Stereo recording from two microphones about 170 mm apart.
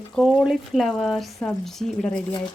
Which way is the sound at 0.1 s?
Centre (ahead or behind).